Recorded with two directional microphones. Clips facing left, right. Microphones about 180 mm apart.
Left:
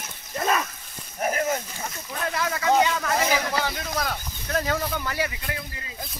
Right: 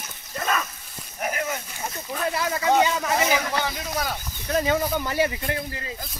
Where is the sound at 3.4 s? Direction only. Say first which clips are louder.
Even; centre (ahead or behind); by 5.3 s 20° right (ahead or behind).